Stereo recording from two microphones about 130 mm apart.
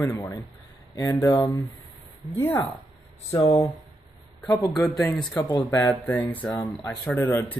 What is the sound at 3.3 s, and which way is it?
Speech, 30° left (ahead or behind).